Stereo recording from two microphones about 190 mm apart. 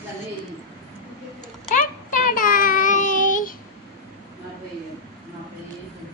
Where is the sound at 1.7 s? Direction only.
45° left (ahead or behind).